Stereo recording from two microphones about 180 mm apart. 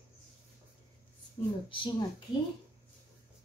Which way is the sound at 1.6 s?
30° left (ahead or behind).